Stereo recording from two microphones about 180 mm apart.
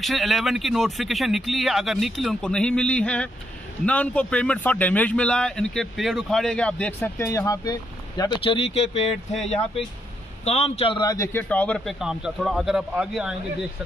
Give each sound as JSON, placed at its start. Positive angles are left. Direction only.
{"t": 0.0, "sound": "a man's voice", "side_deg": 0}
{"t": 8.2, "sound": "speech", "side_deg": 30}
{"t": 10.4, "sound": "a man's voice", "side_deg": 35}